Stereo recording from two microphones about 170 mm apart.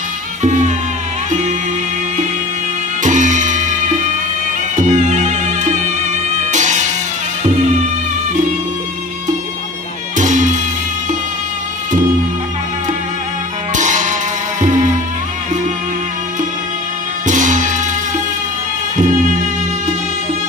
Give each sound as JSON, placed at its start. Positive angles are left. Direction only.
{"t": 0.4, "sound": "music", "side_deg": -45}
{"t": 3.0, "sound": "music", "side_deg": -45}
{"t": 4.7, "sound": "music", "side_deg": -45}
{"t": 10.1, "sound": "music", "side_deg": -45}
{"t": 13.7, "sound": "music", "side_deg": -45}
{"t": 17.3, "sound": "music", "side_deg": -45}